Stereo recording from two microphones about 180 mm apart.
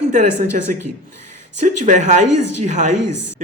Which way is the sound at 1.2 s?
45° right (ahead or behind).